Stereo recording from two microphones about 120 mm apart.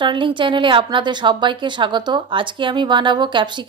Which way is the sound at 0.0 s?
40° right (ahead or behind).